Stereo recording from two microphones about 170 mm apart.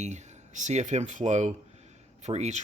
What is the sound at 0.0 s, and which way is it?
Speech, 45° right (ahead or behind).